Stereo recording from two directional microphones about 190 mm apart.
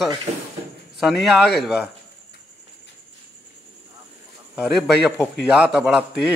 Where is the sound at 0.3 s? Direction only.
35° right (ahead or behind).